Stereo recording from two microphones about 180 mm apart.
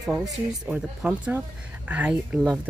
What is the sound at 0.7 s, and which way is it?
Speech, 5° right (ahead or behind).